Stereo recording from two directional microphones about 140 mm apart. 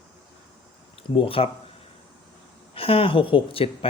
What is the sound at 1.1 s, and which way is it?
Speech, 40° left (ahead or behind).